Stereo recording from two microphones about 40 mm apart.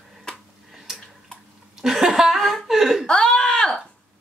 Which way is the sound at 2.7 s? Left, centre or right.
Centre.